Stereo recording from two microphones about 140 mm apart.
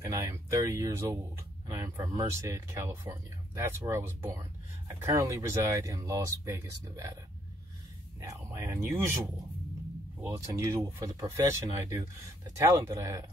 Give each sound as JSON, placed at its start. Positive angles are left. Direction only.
{"t": 0.0, "sound": "speech", "side_deg": -20}
{"t": 8.2, "sound": "speech", "side_deg": -20}